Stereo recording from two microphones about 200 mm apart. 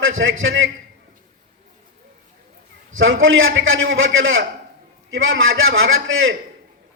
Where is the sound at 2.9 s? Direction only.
80° right.